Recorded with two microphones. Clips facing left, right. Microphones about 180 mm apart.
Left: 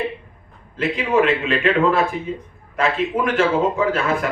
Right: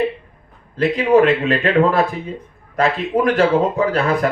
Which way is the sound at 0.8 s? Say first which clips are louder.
Right 5 dB; 35° right (ahead or behind).